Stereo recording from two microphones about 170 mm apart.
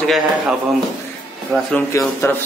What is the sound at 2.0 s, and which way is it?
Speech, 15° left (ahead or behind).